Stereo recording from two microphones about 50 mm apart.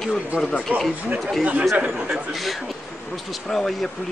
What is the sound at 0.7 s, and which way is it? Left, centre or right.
Speech, right.